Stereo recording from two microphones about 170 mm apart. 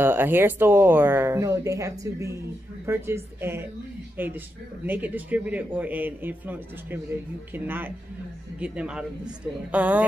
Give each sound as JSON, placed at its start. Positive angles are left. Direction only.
{"t": 0.0, "sound": "speech", "side_deg": -10}